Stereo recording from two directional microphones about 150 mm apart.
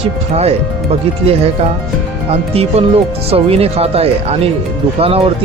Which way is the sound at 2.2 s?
40° right (ahead or behind).